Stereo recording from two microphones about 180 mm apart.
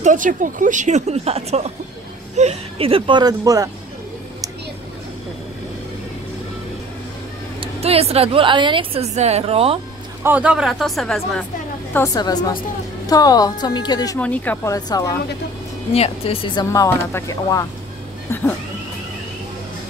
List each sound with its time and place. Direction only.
0.0 s a woman's voice: 45° right (ahead or behind); by 3.7 s 20° right (ahead or behind)
7.6 s a woman's voice: 35° right (ahead or behind)
10.2 s speech: 10° right (ahead or behind)
11.9 s a woman's voice: 15° left (ahead or behind)
14.2 s speech: 10° left (ahead or behind)
15.9 s speech: 30° left (ahead or behind); by 17.6 s 15° left (ahead or behind)